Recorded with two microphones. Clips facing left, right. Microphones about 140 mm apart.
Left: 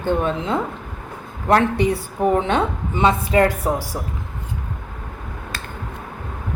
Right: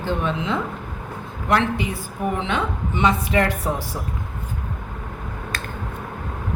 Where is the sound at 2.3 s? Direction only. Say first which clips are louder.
Left 5 dB; 40° left (ahead or behind).